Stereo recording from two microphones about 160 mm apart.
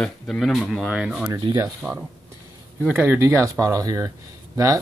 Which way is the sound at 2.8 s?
10° right (ahead or behind).